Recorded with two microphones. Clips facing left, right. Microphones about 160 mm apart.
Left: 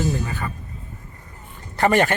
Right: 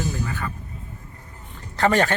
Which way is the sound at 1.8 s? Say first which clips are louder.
Left 2 dB; 15° left (ahead or behind).